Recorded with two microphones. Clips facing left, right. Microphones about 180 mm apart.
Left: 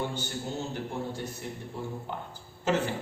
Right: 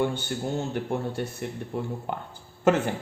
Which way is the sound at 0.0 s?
60° right (ahead or behind).